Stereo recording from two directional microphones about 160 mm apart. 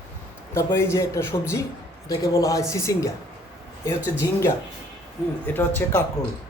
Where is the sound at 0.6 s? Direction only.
15° left (ahead or behind).